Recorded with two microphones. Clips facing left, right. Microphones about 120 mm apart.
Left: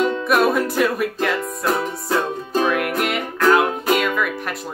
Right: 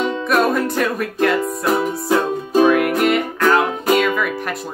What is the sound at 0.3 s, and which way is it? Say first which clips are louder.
Music: right 2 dB; 5° left (ahead or behind).